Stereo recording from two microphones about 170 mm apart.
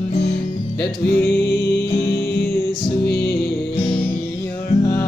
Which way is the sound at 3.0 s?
75° left (ahead or behind).